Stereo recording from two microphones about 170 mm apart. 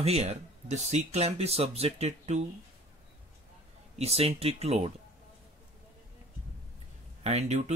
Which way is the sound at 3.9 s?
35° right (ahead or behind).